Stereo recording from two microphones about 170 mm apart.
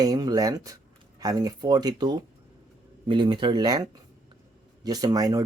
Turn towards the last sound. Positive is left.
turn(degrees=-20)  # may be behind; listen again after turning